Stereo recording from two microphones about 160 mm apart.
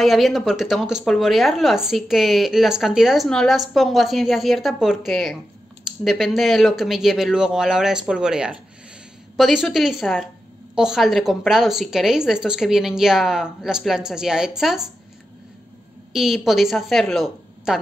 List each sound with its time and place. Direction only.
0.0 s a woman's voice: centre (ahead or behind)
16.1 s a woman's voice: 5° right (ahead or behind)